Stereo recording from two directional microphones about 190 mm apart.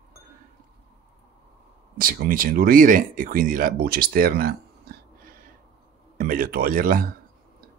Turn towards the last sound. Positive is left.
turn(degrees=-50)  # may be behind; listen again after turning